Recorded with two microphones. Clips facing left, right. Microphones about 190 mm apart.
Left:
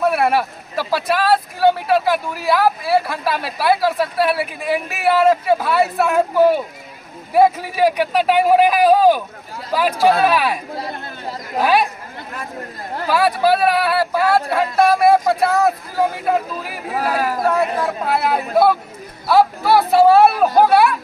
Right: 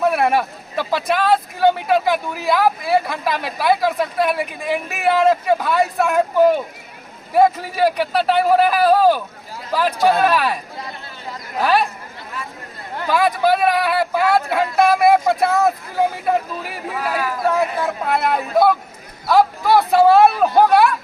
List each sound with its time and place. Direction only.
0.0 s a man's voice: centre (ahead or behind)
11.6 s a man's voice: 10° left (ahead or behind)
13.1 s speech: 5° left (ahead or behind)
16.9 s speech: 40° left (ahead or behind)
17.6 s a man's voice: centre (ahead or behind)